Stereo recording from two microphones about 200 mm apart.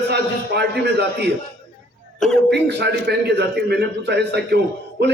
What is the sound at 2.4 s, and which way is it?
A man's voice, 55° right (ahead or behind).